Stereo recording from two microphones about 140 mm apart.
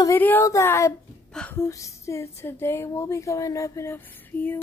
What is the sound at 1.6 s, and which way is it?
A woman's voice, 20° left (ahead or behind).